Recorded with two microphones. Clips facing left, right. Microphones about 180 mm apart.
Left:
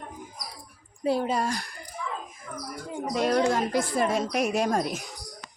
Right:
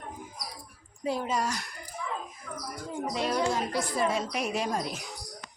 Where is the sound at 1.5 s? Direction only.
35° left (ahead or behind).